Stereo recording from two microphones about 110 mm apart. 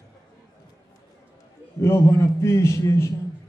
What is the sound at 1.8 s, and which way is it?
A man's voice, 25° left (ahead or behind).